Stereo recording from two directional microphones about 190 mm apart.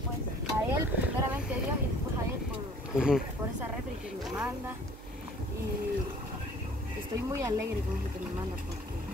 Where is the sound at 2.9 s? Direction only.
5° right (ahead or behind).